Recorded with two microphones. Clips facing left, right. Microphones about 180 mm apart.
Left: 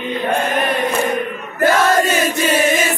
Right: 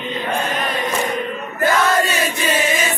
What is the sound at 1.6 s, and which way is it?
Crowd, 50° left (ahead or behind).